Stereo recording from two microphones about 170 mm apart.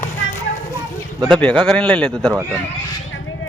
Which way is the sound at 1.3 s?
5° left (ahead or behind).